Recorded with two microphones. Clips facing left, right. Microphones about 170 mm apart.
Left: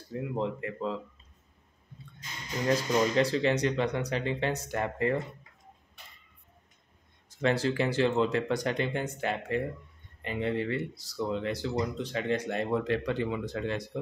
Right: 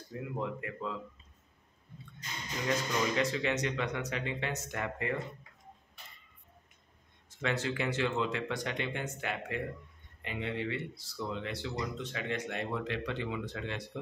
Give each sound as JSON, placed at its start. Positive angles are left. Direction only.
{"t": 0.3, "sound": "speech", "side_deg": 30}
{"t": 2.7, "sound": "speech", "side_deg": 35}
{"t": 7.2, "sound": "speech", "side_deg": 35}